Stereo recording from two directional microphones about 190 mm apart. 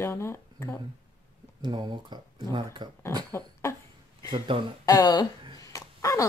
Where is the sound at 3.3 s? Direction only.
15° left (ahead or behind).